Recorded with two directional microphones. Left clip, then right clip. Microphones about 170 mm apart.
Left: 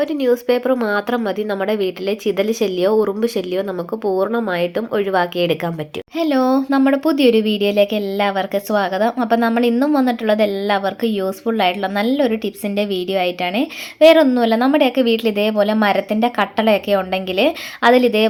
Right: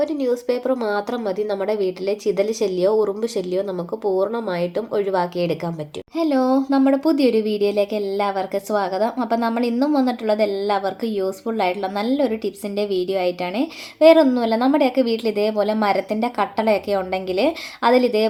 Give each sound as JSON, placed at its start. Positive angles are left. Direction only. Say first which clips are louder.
{"t": 0.4, "sound": "speech", "louder": "left 4 dB", "side_deg": 15}